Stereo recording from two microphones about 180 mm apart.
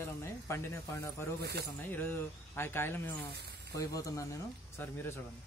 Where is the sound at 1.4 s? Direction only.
65° right (ahead or behind).